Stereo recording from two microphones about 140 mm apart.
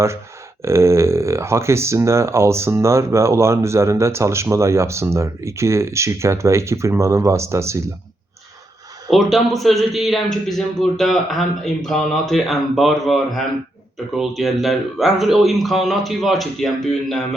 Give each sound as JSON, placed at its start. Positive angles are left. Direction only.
{"t": 0.6, "sound": "speech", "side_deg": -20}
{"t": 9.0, "sound": "speech", "side_deg": 0}